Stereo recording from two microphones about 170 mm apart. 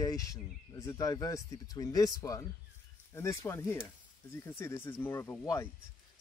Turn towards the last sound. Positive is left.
turn(degrees=15)  # may be behind; listen again after turning